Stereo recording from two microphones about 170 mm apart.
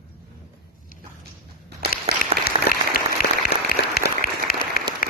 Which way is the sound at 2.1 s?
35° right (ahead or behind).